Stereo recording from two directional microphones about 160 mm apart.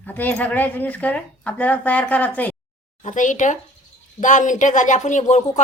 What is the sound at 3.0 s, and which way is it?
Speech, 50° left (ahead or behind).